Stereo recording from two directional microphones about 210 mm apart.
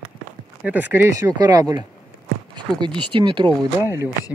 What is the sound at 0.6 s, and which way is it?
Speech, 10° right (ahead or behind).